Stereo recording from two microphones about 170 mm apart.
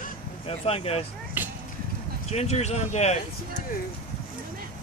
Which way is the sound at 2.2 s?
40° left (ahead or behind).